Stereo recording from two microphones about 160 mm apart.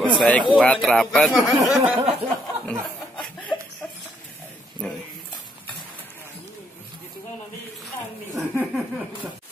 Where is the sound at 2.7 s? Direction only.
5° left (ahead or behind).